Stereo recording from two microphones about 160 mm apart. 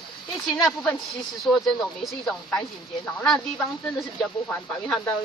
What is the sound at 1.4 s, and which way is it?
A woman's voice, centre (ahead or behind).